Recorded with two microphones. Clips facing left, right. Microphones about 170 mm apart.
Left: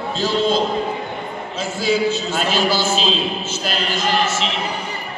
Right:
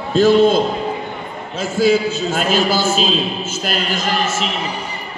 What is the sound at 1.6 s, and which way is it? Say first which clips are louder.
A man's voice: right 5 dB; 45° right (ahead or behind).